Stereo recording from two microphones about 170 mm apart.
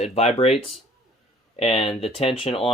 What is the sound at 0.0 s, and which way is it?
Speech, 40° left (ahead or behind).